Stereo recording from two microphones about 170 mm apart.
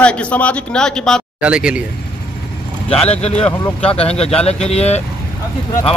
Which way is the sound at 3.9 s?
35° left (ahead or behind).